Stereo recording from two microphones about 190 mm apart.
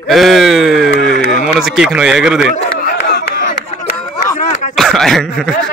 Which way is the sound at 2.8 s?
60° left (ahead or behind).